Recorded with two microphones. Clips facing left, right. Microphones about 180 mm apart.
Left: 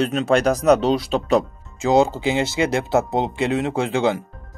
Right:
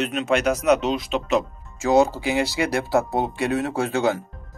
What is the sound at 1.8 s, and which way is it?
Speech, 20° left (ahead or behind).